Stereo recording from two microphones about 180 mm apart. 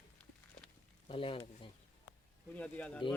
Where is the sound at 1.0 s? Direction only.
30° left (ahead or behind).